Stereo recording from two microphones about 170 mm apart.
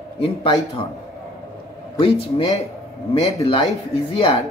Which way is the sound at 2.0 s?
35° left (ahead or behind).